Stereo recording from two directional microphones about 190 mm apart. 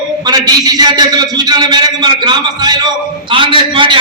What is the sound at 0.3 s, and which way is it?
A man's voice, 20° right (ahead or behind).